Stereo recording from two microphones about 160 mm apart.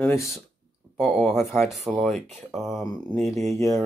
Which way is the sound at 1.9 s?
Centre (ahead or behind).